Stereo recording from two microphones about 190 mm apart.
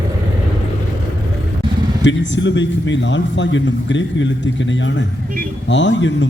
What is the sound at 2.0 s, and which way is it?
A man's voice, 70° left (ahead or behind).